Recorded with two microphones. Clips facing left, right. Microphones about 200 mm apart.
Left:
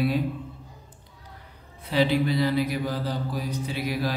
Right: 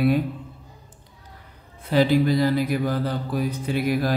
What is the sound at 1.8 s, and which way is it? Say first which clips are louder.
Mantra: right 4 dB; 45° right (ahead or behind).